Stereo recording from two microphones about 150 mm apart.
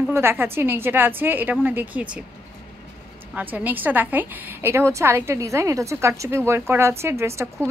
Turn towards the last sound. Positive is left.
turn(degrees=-20)  # may be behind; listen again after turning